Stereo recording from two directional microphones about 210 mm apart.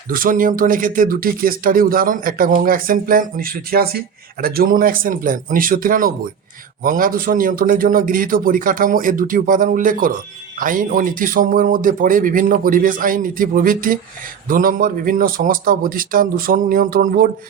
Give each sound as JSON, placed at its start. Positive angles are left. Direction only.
{"t": 0.1, "sound": "speech", "side_deg": -40}